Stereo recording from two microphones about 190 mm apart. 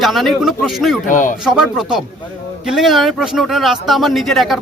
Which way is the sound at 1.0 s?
45° left (ahead or behind).